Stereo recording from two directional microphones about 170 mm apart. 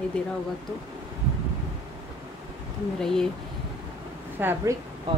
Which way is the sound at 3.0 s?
5° left (ahead or behind).